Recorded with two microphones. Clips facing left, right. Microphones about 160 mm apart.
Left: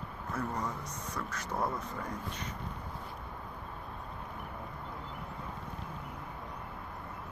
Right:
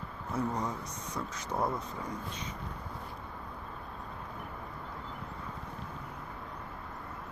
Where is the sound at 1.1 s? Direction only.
20° right (ahead or behind).